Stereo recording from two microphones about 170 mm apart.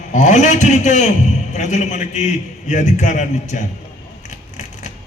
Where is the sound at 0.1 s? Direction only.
45° left (ahead or behind).